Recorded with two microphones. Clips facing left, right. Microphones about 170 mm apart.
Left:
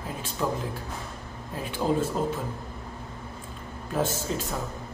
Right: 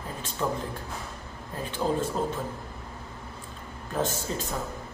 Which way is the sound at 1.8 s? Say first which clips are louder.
Left 2 dB; centre (ahead or behind).